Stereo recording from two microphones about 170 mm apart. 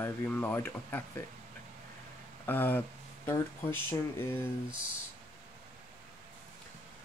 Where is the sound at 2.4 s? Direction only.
10° left (ahead or behind).